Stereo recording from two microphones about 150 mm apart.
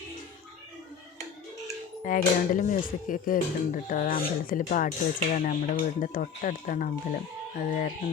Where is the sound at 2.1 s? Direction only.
65° left (ahead or behind).